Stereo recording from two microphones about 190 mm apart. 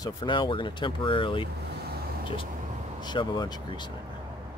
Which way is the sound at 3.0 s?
25° left (ahead or behind).